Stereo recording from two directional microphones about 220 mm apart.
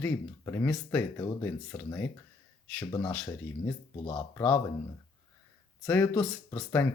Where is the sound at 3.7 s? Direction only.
15° left (ahead or behind).